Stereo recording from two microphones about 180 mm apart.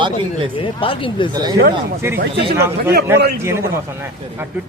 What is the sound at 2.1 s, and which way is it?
Speech, 65° right (ahead or behind).